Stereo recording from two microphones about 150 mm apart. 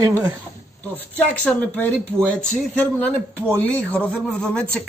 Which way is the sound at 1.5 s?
10° left (ahead or behind).